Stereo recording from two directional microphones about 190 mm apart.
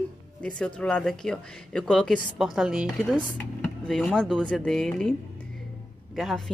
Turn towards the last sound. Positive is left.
turn(degrees=0)  # may be behind; listen again after turning